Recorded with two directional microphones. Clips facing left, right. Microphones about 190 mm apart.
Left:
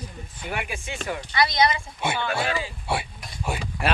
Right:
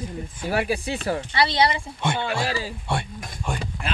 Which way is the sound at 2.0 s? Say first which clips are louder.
Right 1 dB; 10° left (ahead or behind).